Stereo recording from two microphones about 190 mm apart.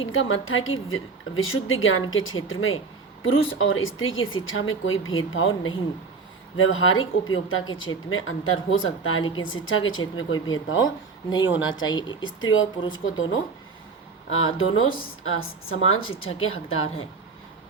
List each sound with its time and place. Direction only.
0.0 s a woman's voice: 90° left
10.8 s speech: 20° left (ahead or behind)
11.4 s speech: 80° left
11.9 s speech: 25° left (ahead or behind)
12.2 s a woman's voice: 90° left
14.3 s a woman's voice: 90° left